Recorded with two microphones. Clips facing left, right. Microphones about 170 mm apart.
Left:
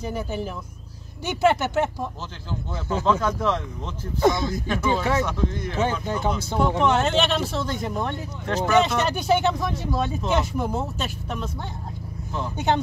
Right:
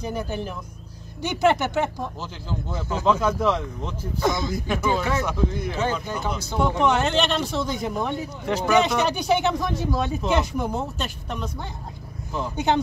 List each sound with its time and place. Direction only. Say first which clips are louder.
0.0 s speech: even; 5° left (ahead or behind)
3.1 s speech: right 2 dB; 10° right (ahead or behind)
4.2 s speech: left 4 dB; 25° left (ahead or behind)
4.5 s speech: even; 10° right (ahead or behind)
5.8 s speech: left 3 dB; 25° left (ahead or behind)
6.8 s speech: right 1 dB; centre (ahead or behind)